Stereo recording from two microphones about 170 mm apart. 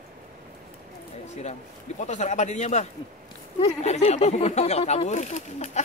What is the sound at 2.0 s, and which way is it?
A man's voice, 45° left (ahead or behind).